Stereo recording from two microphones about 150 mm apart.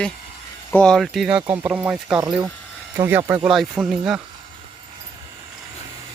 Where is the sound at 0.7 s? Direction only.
5° left (ahead or behind).